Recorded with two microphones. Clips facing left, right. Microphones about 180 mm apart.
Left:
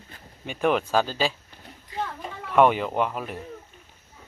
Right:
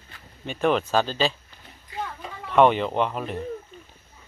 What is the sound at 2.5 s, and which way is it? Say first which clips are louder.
Speech: right 1 dB; 5° left (ahead or behind).